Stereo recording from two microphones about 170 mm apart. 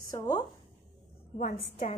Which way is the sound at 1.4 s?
40° left (ahead or behind).